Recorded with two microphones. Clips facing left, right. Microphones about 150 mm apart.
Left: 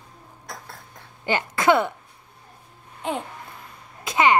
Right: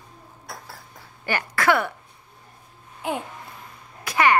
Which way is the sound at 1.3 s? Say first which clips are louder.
Left 2 dB; 20° left (ahead or behind).